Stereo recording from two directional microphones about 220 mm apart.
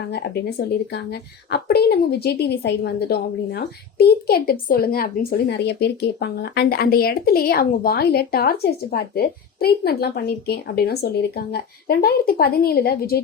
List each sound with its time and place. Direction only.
0.1 s speech: 45° left (ahead or behind)
1.5 s speech: 45° left (ahead or behind)